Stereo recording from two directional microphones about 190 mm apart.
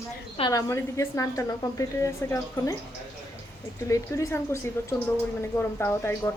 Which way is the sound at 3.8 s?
15° left (ahead or behind).